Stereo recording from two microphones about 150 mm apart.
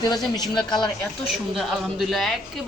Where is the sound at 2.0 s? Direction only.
Centre (ahead or behind).